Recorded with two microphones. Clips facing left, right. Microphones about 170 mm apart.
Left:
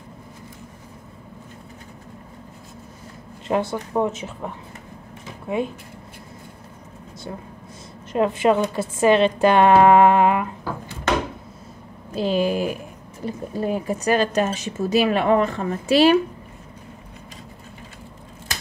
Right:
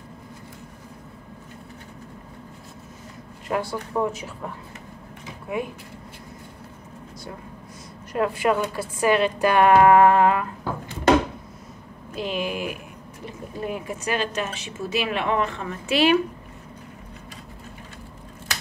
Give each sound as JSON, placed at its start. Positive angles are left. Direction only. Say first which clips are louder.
{"t": 3.4, "sound": "a woman's voice", "louder": "left 4 dB", "side_deg": 25}
{"t": 8.1, "sound": "a woman's voice", "louder": "left 4 dB", "side_deg": 20}
{"t": 12.1, "sound": "speech", "louder": "left 7 dB", "side_deg": 35}